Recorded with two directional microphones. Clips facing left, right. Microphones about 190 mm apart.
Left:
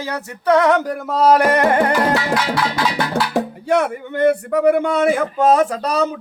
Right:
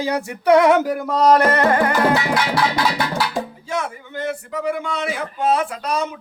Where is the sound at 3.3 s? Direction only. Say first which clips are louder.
Left 7 dB; 60° left (ahead or behind).